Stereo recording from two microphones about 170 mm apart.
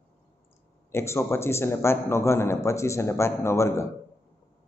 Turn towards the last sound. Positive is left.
turn(degrees=15)  # may be behind; listen again after turning